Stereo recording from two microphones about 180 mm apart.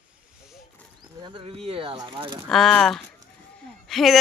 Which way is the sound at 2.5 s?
Centre (ahead or behind).